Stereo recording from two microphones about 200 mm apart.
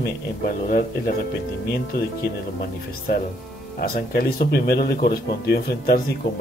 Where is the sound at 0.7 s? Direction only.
45° left (ahead or behind).